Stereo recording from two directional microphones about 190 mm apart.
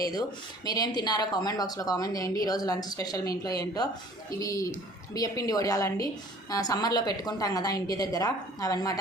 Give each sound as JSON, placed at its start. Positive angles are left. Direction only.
{"t": 0.1, "sound": "a woman's voice", "side_deg": 20}